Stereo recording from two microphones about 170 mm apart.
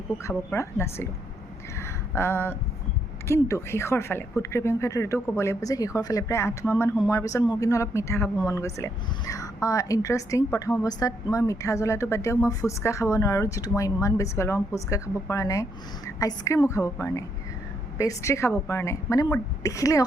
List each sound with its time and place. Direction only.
0.2 s speech: 15° left (ahead or behind)
1.7 s a sound: 15° left (ahead or behind)
3.2 s a woman's voice: 15° left (ahead or behind)